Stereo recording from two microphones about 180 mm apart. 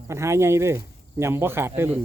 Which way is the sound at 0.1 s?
15° right (ahead or behind).